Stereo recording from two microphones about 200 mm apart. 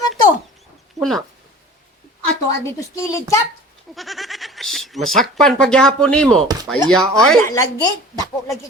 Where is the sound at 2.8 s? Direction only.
15° left (ahead or behind).